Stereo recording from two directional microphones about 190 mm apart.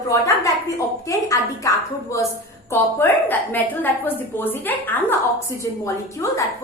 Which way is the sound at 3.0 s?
10° left (ahead or behind).